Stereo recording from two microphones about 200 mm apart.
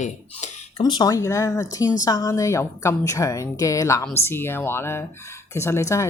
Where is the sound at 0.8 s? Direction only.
20° left (ahead or behind).